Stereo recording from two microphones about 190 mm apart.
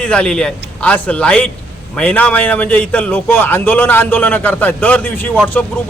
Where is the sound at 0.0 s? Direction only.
5° left (ahead or behind).